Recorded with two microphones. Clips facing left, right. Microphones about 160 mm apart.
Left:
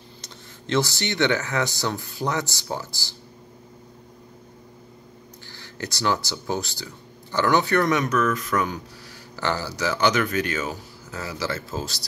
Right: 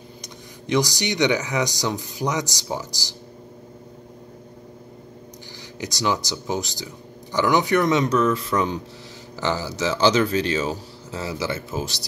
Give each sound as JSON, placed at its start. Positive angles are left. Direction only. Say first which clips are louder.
{"t": 0.2, "sound": "speech", "louder": "right 4 dB", "side_deg": -15}
{"t": 5.6, "sound": "speech", "louder": "right 1 dB", "side_deg": -20}